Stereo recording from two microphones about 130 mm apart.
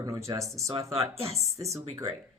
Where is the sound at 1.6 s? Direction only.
25° right (ahead or behind).